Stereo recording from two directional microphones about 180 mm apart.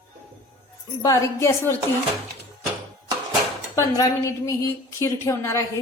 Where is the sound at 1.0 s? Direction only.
20° left (ahead or behind).